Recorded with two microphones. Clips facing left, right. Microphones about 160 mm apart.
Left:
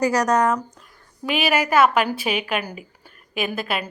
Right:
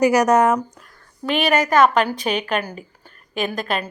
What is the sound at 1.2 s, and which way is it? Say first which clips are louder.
A woman's voice: right 2 dB; 5° left (ahead or behind).